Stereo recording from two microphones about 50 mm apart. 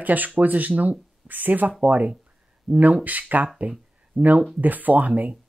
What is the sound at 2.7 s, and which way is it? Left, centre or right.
Speech, centre.